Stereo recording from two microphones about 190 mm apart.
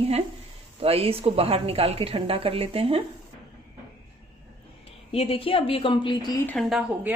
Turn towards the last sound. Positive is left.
turn(degrees=0)  # may be behind; listen again after turning